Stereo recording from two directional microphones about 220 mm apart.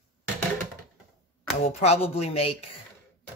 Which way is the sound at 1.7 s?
30° left (ahead or behind).